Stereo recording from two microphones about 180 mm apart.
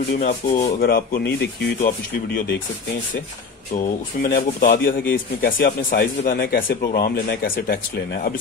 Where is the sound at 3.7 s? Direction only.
45° left (ahead or behind).